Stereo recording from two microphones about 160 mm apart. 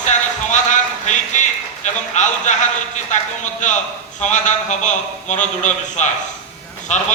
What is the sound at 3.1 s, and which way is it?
A man's voice, 50° left (ahead or behind).